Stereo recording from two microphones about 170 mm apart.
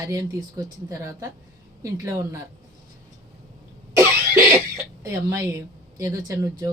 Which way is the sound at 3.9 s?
10° right (ahead or behind).